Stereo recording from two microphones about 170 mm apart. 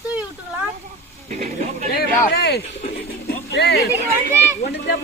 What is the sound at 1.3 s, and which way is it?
Speech, 50° right (ahead or behind).